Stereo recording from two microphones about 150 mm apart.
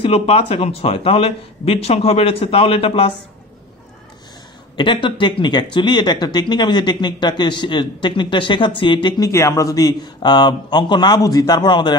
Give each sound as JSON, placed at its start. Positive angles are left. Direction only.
{"t": 0.0, "sound": "speech", "side_deg": 40}
{"t": 4.7, "sound": "speech", "side_deg": 35}
{"t": 9.3, "sound": "a man's voice", "side_deg": 20}